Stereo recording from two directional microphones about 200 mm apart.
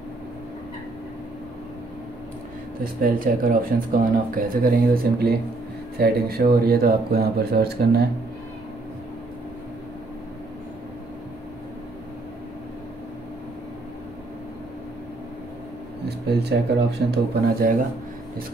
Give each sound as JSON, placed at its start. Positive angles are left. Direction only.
{"t": 2.8, "sound": "speech", "side_deg": -45}
{"t": 16.1, "sound": "speech", "side_deg": -55}